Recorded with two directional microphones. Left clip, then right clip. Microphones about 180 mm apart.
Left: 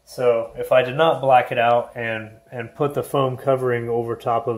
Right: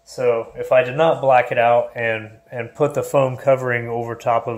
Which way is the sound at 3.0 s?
30° right (ahead or behind).